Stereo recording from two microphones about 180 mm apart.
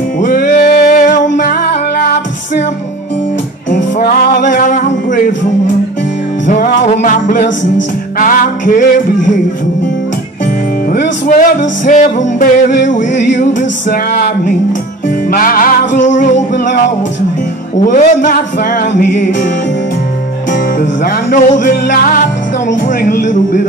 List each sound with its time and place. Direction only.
0.2 s music: 50° left (ahead or behind)
1.4 s music: 55° left (ahead or behind)
3.7 s music: 60° left (ahead or behind)
6.4 s music: 45° left (ahead or behind)
10.9 s music: 50° left (ahead or behind)
13.1 s music: 75° left (ahead or behind)
13.6 s music: 45° left (ahead or behind)
17.8 s music: 45° left (ahead or behind)
20.8 s music: 50° left (ahead or behind)